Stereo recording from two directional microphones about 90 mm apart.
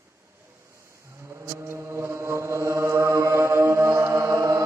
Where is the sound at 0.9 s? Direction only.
30° right (ahead or behind).